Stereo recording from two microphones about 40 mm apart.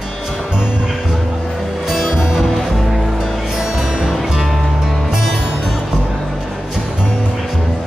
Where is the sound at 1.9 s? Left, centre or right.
Centre.